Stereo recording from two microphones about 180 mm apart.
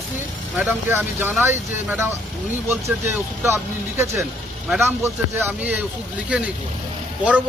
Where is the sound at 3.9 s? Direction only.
15° right (ahead or behind).